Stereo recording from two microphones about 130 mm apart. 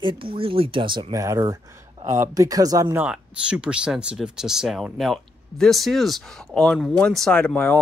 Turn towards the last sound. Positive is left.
turn(degrees=10)  # may be behind; listen again after turning